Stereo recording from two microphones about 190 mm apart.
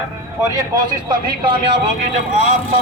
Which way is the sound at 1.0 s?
25° right (ahead or behind).